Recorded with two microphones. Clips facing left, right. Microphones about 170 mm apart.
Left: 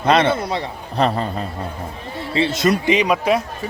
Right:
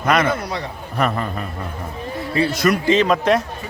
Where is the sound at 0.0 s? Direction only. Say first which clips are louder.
Left 2 dB; 30° left (ahead or behind); by 3.4 s 5° left (ahead or behind).